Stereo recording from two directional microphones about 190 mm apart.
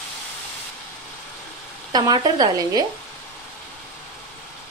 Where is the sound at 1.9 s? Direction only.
20° right (ahead or behind).